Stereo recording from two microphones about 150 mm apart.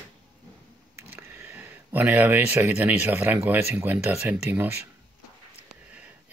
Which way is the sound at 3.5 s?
15° right (ahead or behind).